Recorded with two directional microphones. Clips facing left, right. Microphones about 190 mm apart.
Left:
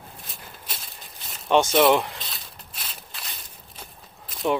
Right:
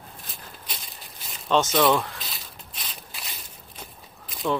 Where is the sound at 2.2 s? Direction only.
Centre (ahead or behind).